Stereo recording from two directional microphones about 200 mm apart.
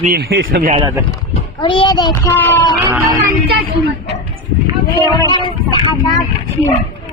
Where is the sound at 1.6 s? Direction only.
25° left (ahead or behind).